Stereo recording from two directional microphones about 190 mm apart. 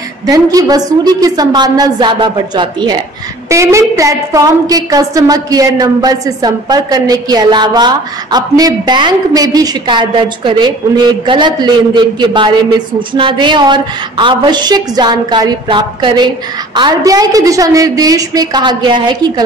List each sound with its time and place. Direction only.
0.3 s a woman's voice: 20° right (ahead or behind)